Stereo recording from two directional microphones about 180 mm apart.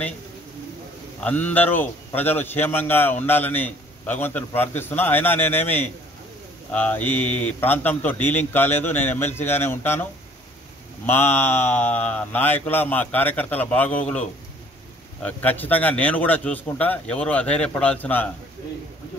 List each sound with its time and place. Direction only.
1.2 s a man's voice: 10° left (ahead or behind)
11.1 s a man's voice: 10° left (ahead or behind)
15.2 s a man's voice: 10° left (ahead or behind)